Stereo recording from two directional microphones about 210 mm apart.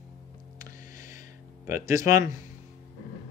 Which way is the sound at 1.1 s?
35° left (ahead or behind).